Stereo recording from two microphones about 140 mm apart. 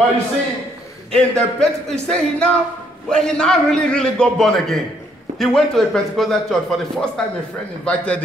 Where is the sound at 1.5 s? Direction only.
5° left (ahead or behind).